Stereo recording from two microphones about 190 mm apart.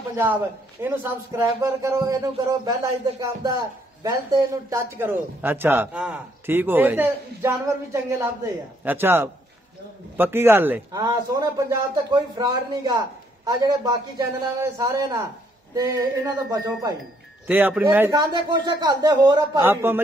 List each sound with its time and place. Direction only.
0.1 s a man's voice: 10° right (ahead or behind)
4.0 s a man's voice: 15° right (ahead or behind)
17.5 s a man's voice: 10° right (ahead or behind)